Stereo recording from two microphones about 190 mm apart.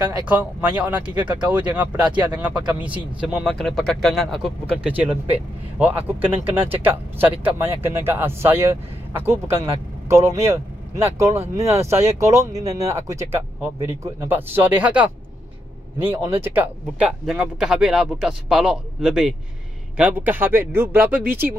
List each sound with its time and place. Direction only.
0.3 s speech: 10° right (ahead or behind)